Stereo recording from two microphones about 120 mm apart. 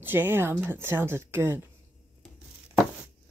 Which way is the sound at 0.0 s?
15° right (ahead or behind).